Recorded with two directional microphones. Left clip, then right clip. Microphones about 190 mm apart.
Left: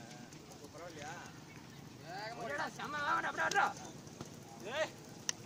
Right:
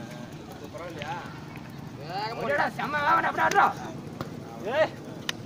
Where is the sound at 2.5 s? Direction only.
40° right (ahead or behind).